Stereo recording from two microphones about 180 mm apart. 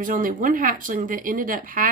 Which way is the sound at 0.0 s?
50° right (ahead or behind).